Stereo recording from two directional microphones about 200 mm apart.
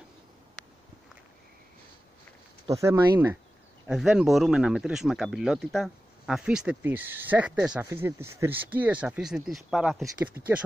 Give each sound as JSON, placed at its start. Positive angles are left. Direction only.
{"t": 2.6, "sound": "speech", "side_deg": -15}
{"t": 3.8, "sound": "speech", "side_deg": -5}